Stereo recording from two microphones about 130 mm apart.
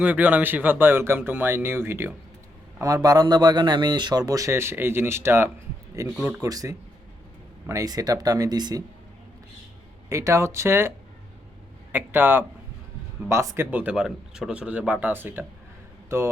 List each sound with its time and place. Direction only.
0.0 s a man's voice: 10° right (ahead or behind)
6.4 s a man's voice: 25° right (ahead or behind)
10.1 s a man's voice: 25° right (ahead or behind)
13.7 s speech: 10° right (ahead or behind)